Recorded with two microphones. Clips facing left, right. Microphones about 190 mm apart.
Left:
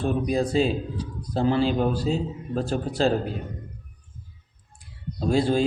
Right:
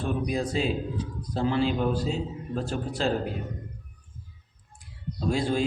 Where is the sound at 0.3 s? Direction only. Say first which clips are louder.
Left 7 dB; 35° left (ahead or behind).